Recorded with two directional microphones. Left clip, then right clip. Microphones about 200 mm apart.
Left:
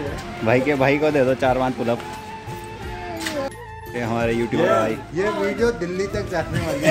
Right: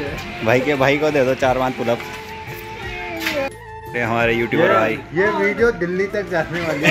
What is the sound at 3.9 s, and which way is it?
Speech, 10° left (ahead or behind).